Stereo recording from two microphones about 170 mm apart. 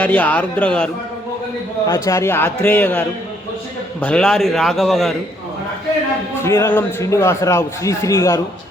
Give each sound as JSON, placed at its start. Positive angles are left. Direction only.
{"t": 0.0, "sound": "a man's voice", "side_deg": 10}
{"t": 1.9, "sound": "a man's voice", "side_deg": 20}
{"t": 6.4, "sound": "a man's voice", "side_deg": 15}